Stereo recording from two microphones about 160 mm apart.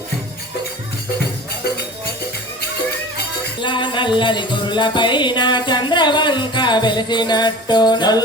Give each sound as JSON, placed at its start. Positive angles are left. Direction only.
{"t": 3.6, "sound": "music", "side_deg": 30}